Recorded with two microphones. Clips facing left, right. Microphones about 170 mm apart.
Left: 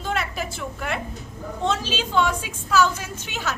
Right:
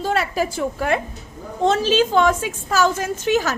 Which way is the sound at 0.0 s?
35° right (ahead or behind).